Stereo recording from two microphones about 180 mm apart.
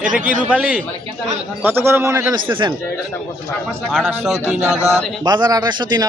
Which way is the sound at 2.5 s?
30° right (ahead or behind).